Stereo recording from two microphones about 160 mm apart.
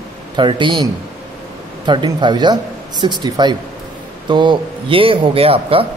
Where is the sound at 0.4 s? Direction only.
30° right (ahead or behind).